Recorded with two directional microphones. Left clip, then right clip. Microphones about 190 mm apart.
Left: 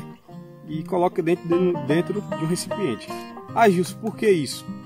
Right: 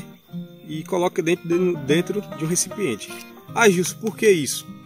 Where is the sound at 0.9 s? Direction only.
20° left (ahead or behind).